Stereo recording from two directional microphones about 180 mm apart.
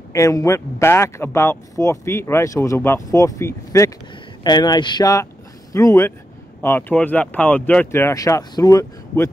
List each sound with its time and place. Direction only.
0.1 s speech: 20° left (ahead or behind)